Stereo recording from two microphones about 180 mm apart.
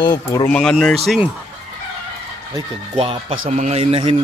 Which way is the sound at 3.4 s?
40° right (ahead or behind).